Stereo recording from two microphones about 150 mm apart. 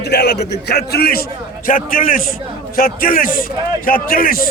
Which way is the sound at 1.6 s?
65° left (ahead or behind).